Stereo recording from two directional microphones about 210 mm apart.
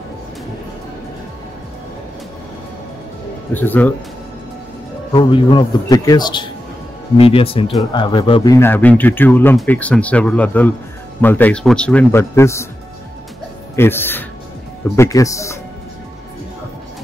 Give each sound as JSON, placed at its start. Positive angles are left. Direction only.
{"t": 3.5, "sound": "speech", "side_deg": 10}
{"t": 5.1, "sound": "a man's voice", "side_deg": 20}
{"t": 13.7, "sound": "speech", "side_deg": 10}